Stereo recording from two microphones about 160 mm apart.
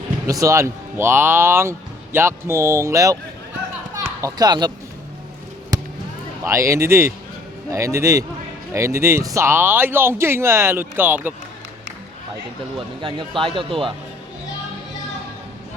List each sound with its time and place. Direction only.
0.3 s speech: 20° right (ahead or behind)
3.9 s children playing: 20° right (ahead or behind)
5.7 s basketball bounce: 25° right (ahead or behind)
6.4 s a man's voice: 20° right (ahead or behind)
13.0 s speech: 30° right (ahead or behind)